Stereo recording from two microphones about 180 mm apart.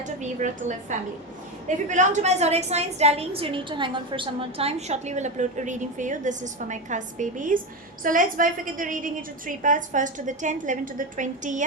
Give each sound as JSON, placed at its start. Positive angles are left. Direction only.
{"t": 0.0, "sound": "a woman's voice", "side_deg": -40}